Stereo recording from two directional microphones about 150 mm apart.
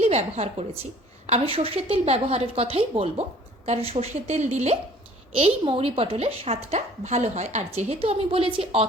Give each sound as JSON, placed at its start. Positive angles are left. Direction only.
{"t": 0.0, "sound": "a woman's voice", "side_deg": -45}